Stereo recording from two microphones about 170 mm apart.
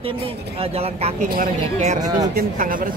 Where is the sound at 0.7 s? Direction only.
35° right (ahead or behind).